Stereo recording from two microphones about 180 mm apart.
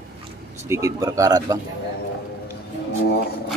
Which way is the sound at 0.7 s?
20° right (ahead or behind).